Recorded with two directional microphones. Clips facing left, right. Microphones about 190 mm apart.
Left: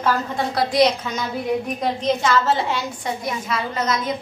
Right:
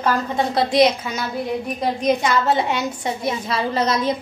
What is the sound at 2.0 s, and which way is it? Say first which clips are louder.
A woman's voice: right 1 dB; 15° right (ahead or behind).